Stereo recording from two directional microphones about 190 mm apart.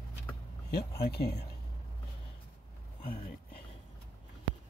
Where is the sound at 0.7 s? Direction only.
60° left (ahead or behind).